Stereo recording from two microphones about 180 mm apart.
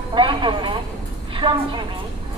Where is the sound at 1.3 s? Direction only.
25° right (ahead or behind).